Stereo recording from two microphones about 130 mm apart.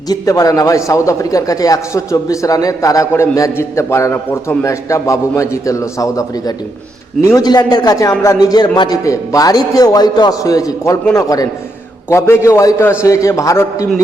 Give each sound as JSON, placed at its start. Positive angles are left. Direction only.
{"t": 0.1, "sound": "a man's voice", "side_deg": 30}